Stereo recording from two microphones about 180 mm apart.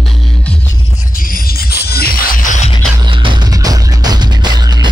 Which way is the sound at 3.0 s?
25° right (ahead or behind).